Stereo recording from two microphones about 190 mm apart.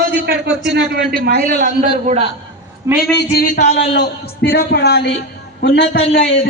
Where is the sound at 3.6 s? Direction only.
35° left (ahead or behind).